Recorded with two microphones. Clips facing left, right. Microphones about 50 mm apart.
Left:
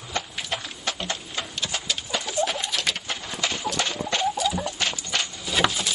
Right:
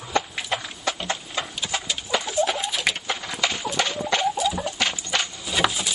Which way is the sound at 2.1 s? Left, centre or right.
Right.